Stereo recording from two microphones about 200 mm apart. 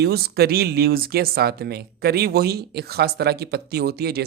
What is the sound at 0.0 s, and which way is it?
A woman's voice, 50° right (ahead or behind).